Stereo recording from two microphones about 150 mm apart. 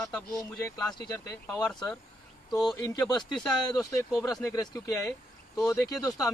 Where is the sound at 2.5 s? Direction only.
25° left (ahead or behind).